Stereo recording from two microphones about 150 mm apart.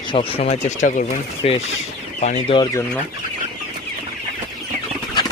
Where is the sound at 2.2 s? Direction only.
55° left (ahead or behind).